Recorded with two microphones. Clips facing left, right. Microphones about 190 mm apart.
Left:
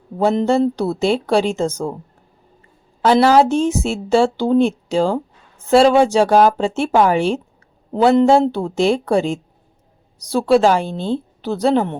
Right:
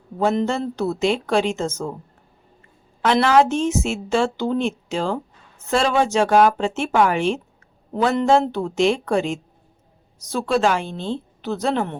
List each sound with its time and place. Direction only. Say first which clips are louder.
0.2 s a woman's voice: left 5 dB; 35° left (ahead or behind)
3.0 s a woman's voice: left 4 dB; 35° left (ahead or behind)